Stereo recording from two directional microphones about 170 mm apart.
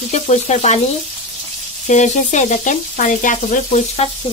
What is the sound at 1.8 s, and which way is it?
Sizzle, 45° left (ahead or behind).